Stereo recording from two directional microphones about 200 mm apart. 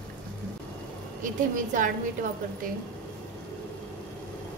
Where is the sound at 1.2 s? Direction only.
40° right (ahead or behind).